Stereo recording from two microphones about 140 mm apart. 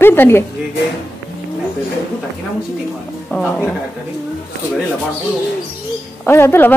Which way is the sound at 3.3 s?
5° left (ahead or behind).